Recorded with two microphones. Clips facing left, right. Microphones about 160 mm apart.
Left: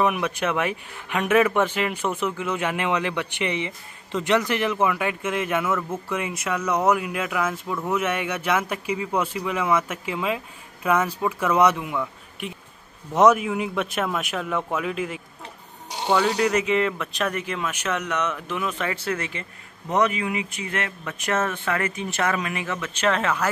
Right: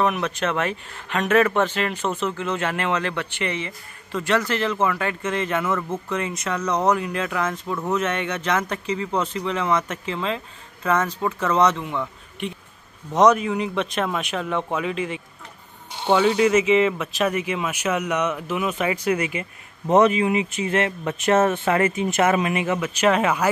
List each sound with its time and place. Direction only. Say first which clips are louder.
0.0 s a man's voice: even; 10° left (ahead or behind); by 19.4 s 15° right (ahead or behind)
19.9 s speech: right 6 dB; 25° right (ahead or behind)